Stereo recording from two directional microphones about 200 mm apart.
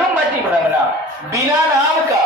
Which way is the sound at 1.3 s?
15° right (ahead or behind).